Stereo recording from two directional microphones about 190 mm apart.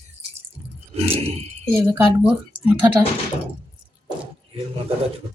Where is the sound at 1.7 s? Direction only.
10° right (ahead or behind).